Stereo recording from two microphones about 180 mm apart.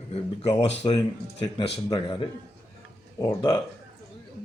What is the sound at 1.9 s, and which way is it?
A man's voice, 25° left (ahead or behind).